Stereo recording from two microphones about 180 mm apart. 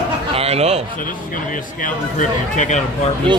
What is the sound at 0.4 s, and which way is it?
Speech, 35° right (ahead or behind).